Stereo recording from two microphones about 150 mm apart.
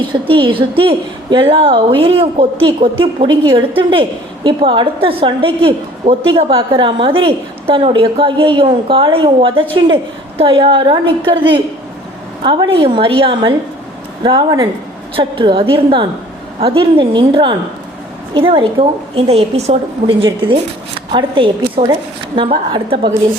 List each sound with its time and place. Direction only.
0.1 s a woman's voice: 35° right (ahead or behind)